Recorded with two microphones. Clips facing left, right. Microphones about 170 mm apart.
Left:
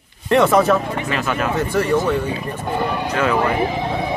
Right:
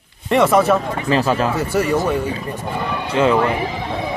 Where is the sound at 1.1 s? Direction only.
30° right (ahead or behind).